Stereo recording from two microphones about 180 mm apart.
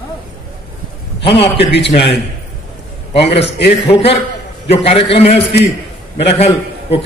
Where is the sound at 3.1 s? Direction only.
35° left (ahead or behind).